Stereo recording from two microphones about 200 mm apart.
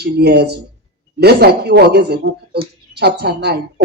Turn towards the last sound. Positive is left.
turn(degrees=-55)  # may be behind; listen again after turning